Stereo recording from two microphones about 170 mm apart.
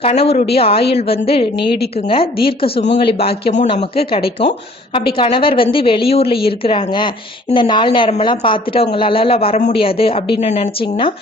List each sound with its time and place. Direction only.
0.0 s speech: 35° left (ahead or behind)